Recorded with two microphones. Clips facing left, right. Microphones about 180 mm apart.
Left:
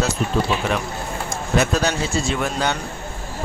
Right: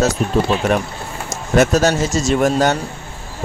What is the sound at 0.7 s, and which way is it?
Speech, 50° right (ahead or behind).